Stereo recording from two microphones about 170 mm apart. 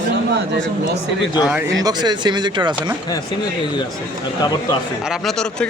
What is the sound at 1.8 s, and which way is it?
Speech, 25° right (ahead or behind).